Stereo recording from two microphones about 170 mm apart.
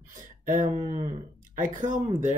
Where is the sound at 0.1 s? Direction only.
50° right (ahead or behind).